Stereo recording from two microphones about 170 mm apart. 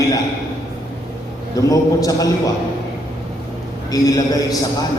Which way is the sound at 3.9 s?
20° left (ahead or behind).